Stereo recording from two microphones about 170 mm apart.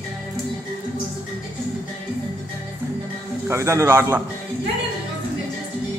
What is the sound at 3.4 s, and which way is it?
Speech, 15° right (ahead or behind).